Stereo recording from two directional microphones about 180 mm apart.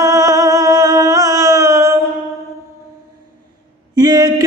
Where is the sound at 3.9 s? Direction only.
20° right (ahead or behind).